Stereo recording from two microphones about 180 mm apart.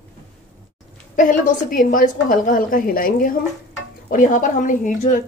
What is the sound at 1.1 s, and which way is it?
A woman's voice, 45° left (ahead or behind).